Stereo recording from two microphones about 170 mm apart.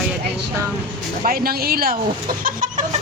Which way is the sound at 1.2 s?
60° right (ahead or behind).